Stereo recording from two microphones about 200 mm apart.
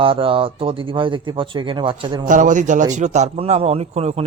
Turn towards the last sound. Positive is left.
turn(degrees=-30)  # may be behind; listen again after turning